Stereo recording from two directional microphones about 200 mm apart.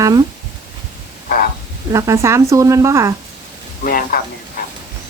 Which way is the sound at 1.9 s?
15° right (ahead or behind).